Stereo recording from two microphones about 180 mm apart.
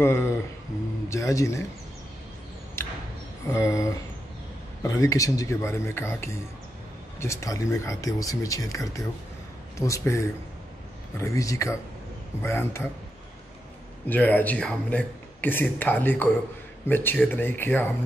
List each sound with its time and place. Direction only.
0.0 s music: 15° left (ahead or behind)
1.1 s speech: 15° left (ahead or behind)
2.8 s a sound: 15° left (ahead or behind)
3.5 s speech: 15° left (ahead or behind)
14.0 s speech: 10° left (ahead or behind)